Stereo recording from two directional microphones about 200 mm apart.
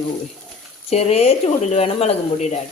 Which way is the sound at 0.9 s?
30° left (ahead or behind).